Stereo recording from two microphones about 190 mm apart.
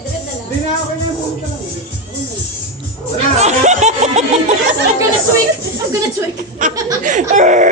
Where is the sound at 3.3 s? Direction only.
35° right (ahead or behind).